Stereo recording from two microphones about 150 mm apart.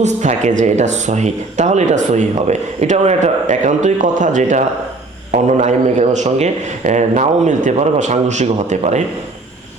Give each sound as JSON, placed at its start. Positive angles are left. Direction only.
{"t": 0.0, "sound": "speech", "side_deg": -50}